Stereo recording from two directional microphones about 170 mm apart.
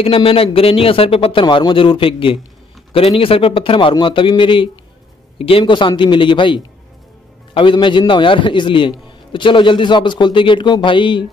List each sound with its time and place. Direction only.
0.0 s a man's voice: 35° left (ahead or behind)